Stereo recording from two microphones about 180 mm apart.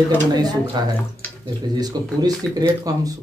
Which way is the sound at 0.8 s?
25° right (ahead or behind).